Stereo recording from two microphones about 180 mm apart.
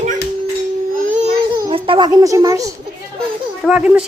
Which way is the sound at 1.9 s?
25° right (ahead or behind).